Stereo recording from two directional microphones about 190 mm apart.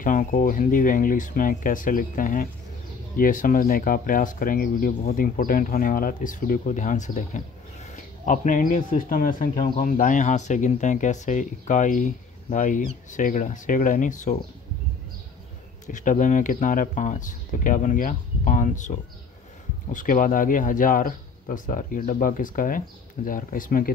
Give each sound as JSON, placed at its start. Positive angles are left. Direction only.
{"t": 0.0, "sound": "speech", "side_deg": 45}
{"t": 15.9, "sound": "speech", "side_deg": 40}